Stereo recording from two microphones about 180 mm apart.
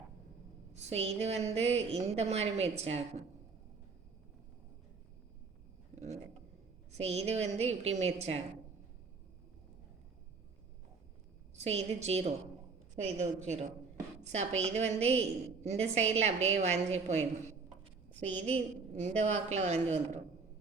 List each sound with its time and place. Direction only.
0.7 s a woman's voice: 35° right (ahead or behind)
6.9 s a woman's voice: 35° right (ahead or behind)
11.5 s a woman's voice: 35° right (ahead or behind)
18.3 s a woman's voice: 35° right (ahead or behind)